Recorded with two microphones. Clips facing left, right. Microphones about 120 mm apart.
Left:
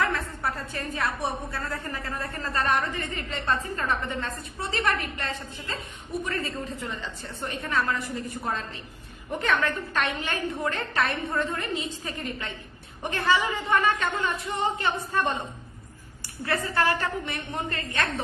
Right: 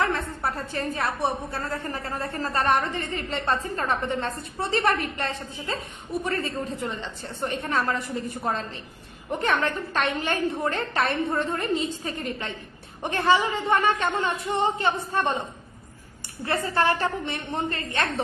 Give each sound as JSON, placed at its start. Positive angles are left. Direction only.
{"t": 0.0, "sound": "a sound", "side_deg": -30}
{"t": 1.5, "sound": "a woman's voice", "side_deg": -30}
{"t": 4.8, "sound": "a woman's voice", "side_deg": -45}
{"t": 7.9, "sound": "a woman's voice", "side_deg": -30}
{"t": 9.4, "sound": "a woman's voice", "side_deg": -40}
{"t": 16.5, "sound": "a woman's voice", "side_deg": -25}